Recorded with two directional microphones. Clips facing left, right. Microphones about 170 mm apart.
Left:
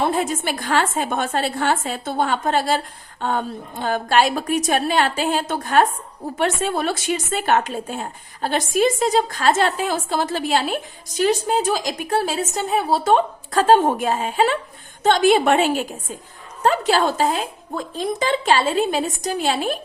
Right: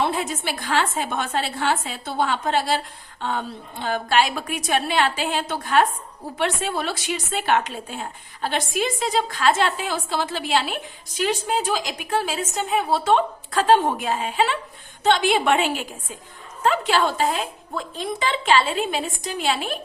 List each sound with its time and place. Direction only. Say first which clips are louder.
0.0 s speech: left 3 dB; 45° left (ahead or behind)